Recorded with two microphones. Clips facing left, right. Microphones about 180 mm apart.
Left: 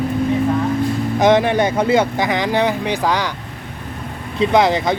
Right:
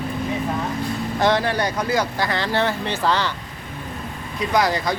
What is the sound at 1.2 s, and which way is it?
Speech, 20° left (ahead or behind).